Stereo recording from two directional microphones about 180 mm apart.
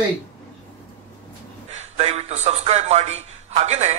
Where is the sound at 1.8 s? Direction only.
35° right (ahead or behind).